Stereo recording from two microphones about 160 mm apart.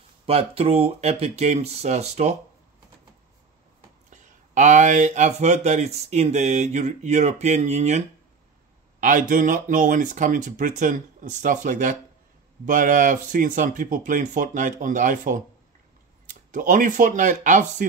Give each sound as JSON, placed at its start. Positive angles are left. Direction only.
{"t": 0.3, "sound": "speech", "side_deg": -40}
{"t": 4.1, "sound": "speech", "side_deg": -50}
{"t": 9.3, "sound": "speech", "side_deg": -55}